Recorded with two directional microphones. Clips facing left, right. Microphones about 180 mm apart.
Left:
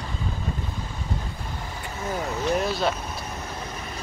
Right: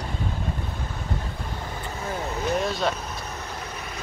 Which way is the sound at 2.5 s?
Centre (ahead or behind).